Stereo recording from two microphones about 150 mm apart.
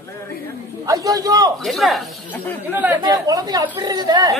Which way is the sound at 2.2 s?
10° left (ahead or behind).